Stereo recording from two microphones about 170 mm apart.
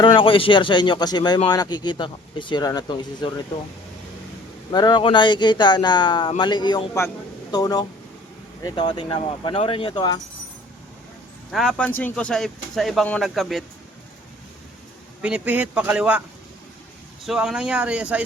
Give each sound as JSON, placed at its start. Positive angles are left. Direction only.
{"t": 0.0, "sound": "speech", "side_deg": 30}
{"t": 4.7, "sound": "speech", "side_deg": 25}
{"t": 11.5, "sound": "speech", "side_deg": 0}
{"t": 15.2, "sound": "speech", "side_deg": -10}
{"t": 17.2, "sound": "speech", "side_deg": -5}